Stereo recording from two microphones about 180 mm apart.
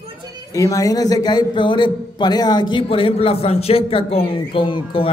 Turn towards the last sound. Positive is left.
turn(degrees=30)  # may be behind; listen again after turning